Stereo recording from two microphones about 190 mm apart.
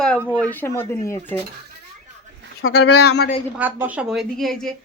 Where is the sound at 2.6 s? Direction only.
90° left; by 3.3 s 65° left (ahead or behind).